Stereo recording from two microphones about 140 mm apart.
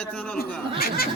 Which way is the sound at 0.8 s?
90° left.